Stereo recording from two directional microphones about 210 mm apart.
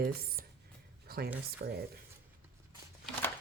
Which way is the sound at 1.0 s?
45° right (ahead or behind).